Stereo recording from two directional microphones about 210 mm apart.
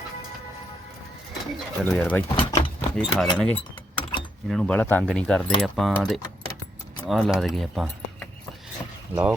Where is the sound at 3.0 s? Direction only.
5° left (ahead or behind).